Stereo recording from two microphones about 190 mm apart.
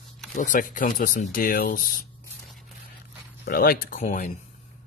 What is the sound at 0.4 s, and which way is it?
Speech, 45° left (ahead or behind).